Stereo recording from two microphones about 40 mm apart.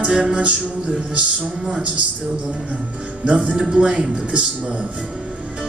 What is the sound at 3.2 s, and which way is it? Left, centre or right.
Speech, right.